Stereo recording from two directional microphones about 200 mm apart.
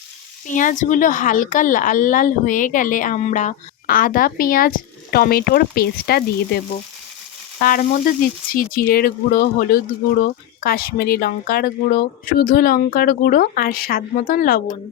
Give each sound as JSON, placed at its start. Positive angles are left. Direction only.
{"t": 0.4, "sound": "speech", "side_deg": 40}
{"t": 7.7, "sound": "speech", "side_deg": 40}